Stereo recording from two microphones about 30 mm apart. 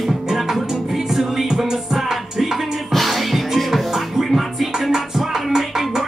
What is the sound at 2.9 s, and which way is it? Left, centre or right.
Music, centre.